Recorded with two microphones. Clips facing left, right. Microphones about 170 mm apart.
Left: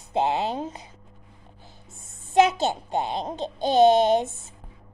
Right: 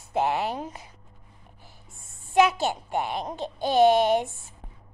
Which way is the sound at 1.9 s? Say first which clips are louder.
Left 2 dB; 20° left (ahead or behind).